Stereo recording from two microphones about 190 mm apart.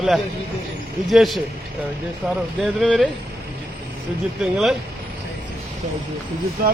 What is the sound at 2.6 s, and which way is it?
Speech, centre (ahead or behind).